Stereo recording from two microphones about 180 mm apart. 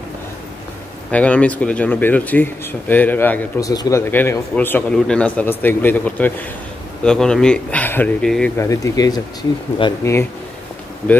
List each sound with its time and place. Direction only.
1.1 s a man's voice: 5° left (ahead or behind)
8.5 s a man's voice: 15° left (ahead or behind)